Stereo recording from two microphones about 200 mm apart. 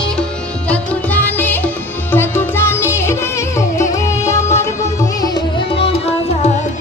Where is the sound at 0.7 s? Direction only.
10° left (ahead or behind); by 5.9 s 25° left (ahead or behind).